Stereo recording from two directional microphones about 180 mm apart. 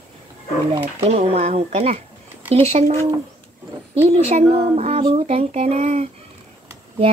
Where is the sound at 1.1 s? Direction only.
35° right (ahead or behind).